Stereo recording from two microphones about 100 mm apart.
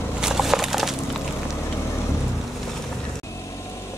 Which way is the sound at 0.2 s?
5° right (ahead or behind).